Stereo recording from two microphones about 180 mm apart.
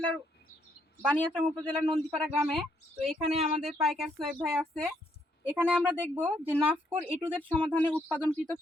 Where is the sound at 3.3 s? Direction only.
40° right (ahead or behind).